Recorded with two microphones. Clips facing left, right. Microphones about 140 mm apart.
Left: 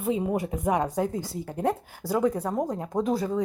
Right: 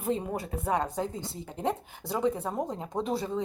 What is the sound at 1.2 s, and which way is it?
Speech, 25° right (ahead or behind).